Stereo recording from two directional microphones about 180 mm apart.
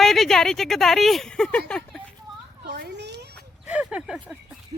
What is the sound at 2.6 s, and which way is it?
Children playing, 70° right (ahead or behind).